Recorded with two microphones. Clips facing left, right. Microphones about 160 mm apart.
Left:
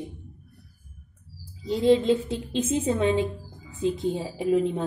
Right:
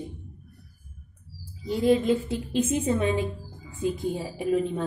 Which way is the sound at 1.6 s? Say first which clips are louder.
Left 2 dB; 25° left (ahead or behind).